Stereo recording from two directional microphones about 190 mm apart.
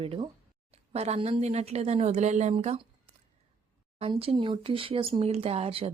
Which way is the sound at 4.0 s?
30° right (ahead or behind).